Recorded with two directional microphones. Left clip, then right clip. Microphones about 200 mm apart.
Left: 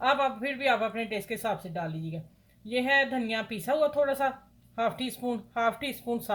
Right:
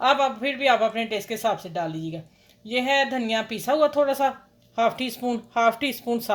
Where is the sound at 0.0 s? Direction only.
30° right (ahead or behind).